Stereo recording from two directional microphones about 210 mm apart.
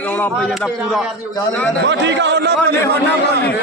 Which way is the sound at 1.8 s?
60° right (ahead or behind).